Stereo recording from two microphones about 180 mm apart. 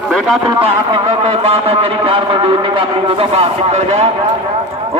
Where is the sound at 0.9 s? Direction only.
30° right (ahead or behind).